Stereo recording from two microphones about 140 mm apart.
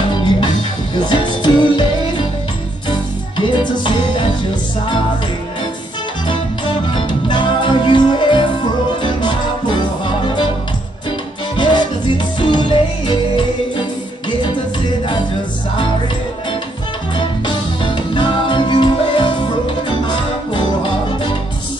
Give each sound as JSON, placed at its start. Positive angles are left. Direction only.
{"t": 0.9, "sound": "music", "side_deg": 35}
{"t": 3.3, "sound": "music", "side_deg": 35}
{"t": 7.0, "sound": "music", "side_deg": 35}
{"t": 11.1, "sound": "music", "side_deg": 35}
{"t": 17.1, "sound": "music", "side_deg": 35}